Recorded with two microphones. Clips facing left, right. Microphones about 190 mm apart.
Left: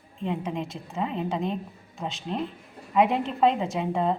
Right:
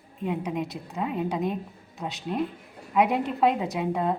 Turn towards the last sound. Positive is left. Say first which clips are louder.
# left 1 dB
turn(degrees=-5)  # may be behind; listen again after turning